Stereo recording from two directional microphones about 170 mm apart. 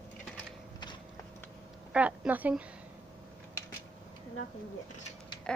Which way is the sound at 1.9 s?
10° right (ahead or behind).